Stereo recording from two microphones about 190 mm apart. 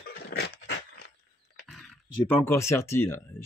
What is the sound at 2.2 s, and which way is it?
Speech, 10° left (ahead or behind).